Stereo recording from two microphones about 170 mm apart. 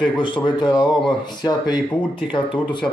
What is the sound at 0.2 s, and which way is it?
Speech, 30° left (ahead or behind).